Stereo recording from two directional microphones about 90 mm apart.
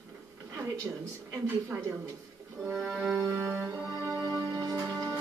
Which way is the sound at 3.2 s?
35° right (ahead or behind).